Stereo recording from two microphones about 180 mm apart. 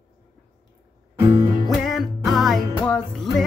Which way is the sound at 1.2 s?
25° right (ahead or behind).